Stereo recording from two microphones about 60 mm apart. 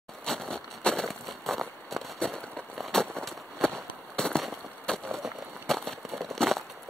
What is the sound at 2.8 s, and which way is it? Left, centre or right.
Firecracker, centre.